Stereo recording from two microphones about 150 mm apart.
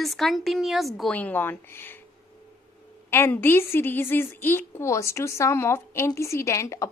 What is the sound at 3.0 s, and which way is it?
A woman's voice, 15° left (ahead or behind).